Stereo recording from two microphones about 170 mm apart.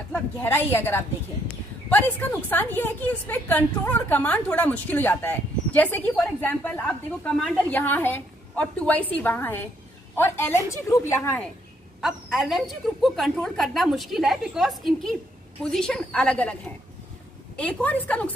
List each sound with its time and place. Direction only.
0.1 s a woman's voice: 15° left (ahead or behind)
12.0 s a woman's voice: centre (ahead or behind)
17.6 s a woman's voice: 10° left (ahead or behind)